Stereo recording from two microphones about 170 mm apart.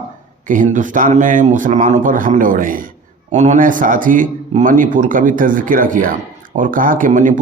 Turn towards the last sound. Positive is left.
turn(degrees=-50)  # may be behind; listen again after turning